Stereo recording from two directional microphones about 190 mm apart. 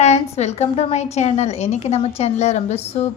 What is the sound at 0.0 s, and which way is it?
A woman's voice, 35° left (ahead or behind).